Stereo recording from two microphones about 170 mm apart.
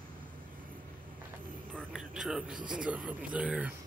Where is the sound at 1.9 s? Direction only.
5° right (ahead or behind).